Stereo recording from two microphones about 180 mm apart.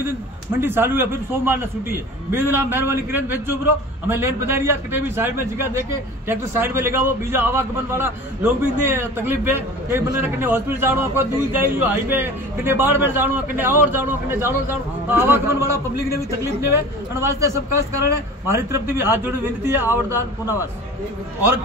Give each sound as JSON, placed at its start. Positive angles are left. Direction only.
{"t": 0.0, "sound": "a man's voice", "side_deg": -10}